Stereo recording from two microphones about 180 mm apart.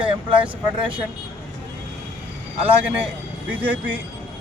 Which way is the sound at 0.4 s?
30° right (ahead or behind).